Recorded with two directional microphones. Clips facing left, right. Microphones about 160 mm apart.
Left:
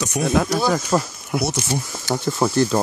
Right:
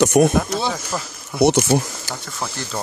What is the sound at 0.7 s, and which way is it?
Speech, 70° left (ahead or behind).